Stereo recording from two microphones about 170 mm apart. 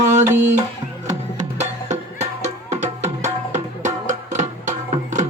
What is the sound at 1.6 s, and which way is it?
Music, 45° right (ahead or behind).